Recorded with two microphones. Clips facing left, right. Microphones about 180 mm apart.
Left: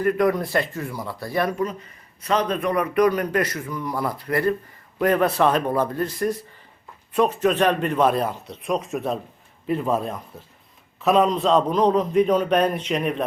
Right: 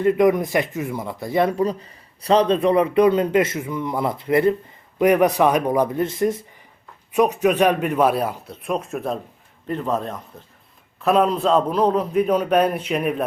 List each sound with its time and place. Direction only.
0.0 s a man's voice: 20° right (ahead or behind)